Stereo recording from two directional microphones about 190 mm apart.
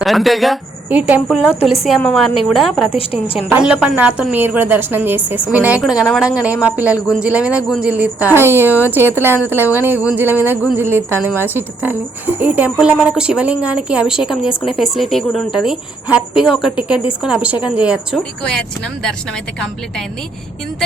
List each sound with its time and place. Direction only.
0.0 s a woman's voice: centre (ahead or behind)
3.0 s a woman's voice: 30° left (ahead or behind)
3.3 s a woman's voice: 5° right (ahead or behind)